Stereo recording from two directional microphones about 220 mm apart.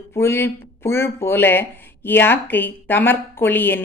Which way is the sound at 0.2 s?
10° left (ahead or behind).